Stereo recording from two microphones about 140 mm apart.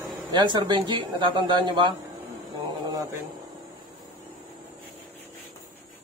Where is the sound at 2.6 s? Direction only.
30° right (ahead or behind).